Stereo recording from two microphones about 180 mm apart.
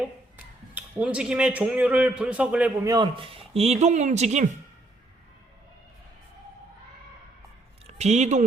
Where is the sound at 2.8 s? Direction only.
20° right (ahead or behind); by 4.5 s 40° right (ahead or behind).